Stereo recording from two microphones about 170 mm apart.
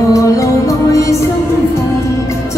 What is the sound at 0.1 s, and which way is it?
Music, 20° left (ahead or behind).